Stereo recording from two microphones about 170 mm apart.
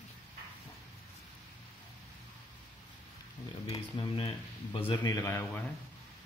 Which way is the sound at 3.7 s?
30° left (ahead or behind).